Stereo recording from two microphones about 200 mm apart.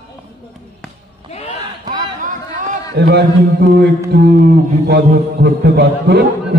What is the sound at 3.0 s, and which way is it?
Speech, 55° right (ahead or behind).